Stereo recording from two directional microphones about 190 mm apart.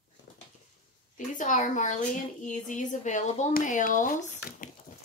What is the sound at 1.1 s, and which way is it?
A woman's voice, 40° left (ahead or behind).